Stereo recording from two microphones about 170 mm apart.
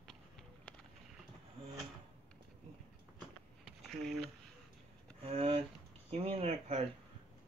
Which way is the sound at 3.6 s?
Centre (ahead or behind).